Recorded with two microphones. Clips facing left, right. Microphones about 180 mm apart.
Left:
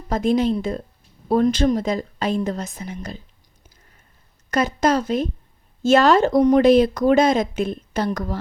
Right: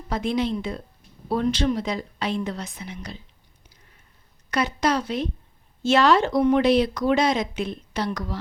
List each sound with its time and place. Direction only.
0.1 s speech: 45° left (ahead or behind)
4.5 s speech: 45° left (ahead or behind)